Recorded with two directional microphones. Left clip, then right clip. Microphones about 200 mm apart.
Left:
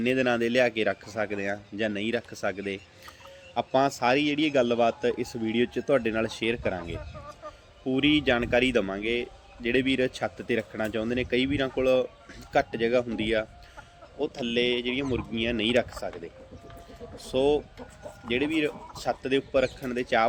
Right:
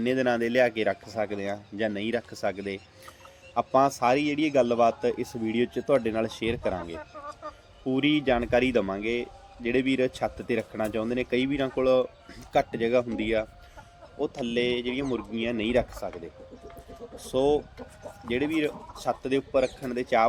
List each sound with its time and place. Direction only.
0.0 s speech: 10° left (ahead or behind)
6.9 s speech: 35° right (ahead or behind)
7.9 s speech: 5° left (ahead or behind)
17.2 s speech: 5° left (ahead or behind)